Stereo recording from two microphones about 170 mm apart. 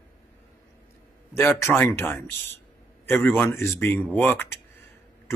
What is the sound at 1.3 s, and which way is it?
A man's voice, 15° left (ahead or behind).